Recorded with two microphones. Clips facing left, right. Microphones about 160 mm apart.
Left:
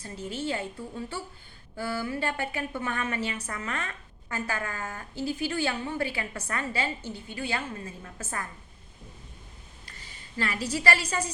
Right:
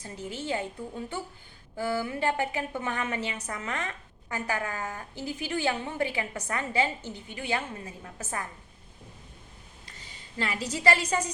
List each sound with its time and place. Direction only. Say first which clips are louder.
0.0 s a woman's voice: left 3 dB; 15° right (ahead or behind)
9.8 s a woman's voice: even; 20° right (ahead or behind)